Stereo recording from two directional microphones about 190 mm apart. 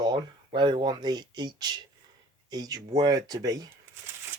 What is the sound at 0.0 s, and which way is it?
Speech, 25° right (ahead or behind).